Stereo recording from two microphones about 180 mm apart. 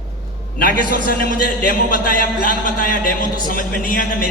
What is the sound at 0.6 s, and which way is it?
A man's voice, 55° left (ahead or behind).